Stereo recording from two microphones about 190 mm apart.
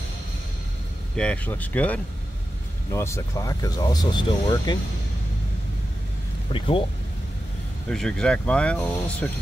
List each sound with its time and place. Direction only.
1.1 s speech: 5° left (ahead or behind); by 4.7 s 20° left (ahead or behind)
6.5 s speech: 25° left (ahead or behind)
7.9 s speech: 5° left (ahead or behind)